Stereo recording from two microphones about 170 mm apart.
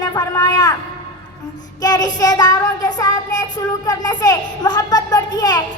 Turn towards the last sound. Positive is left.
turn(degrees=25)  # may be behind; listen again after turning